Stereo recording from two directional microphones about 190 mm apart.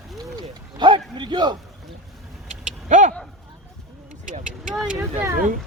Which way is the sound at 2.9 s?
40° right (ahead or behind).